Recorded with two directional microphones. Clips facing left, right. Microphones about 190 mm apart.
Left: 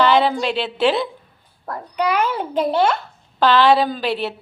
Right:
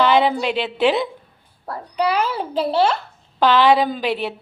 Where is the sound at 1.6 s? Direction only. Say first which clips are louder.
Even; 35° right (ahead or behind).